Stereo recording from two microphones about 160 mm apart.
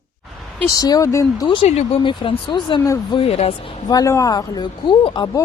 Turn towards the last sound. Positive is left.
turn(degrees=30)  # may be behind; listen again after turning